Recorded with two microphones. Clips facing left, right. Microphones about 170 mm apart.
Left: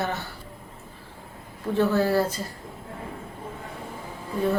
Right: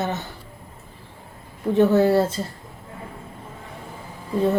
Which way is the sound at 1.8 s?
20° right (ahead or behind).